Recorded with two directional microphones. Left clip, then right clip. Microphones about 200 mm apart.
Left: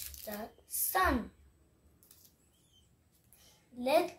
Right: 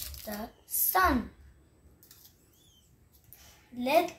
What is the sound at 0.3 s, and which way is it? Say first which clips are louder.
Speech: right 3 dB; 10° left (ahead or behind).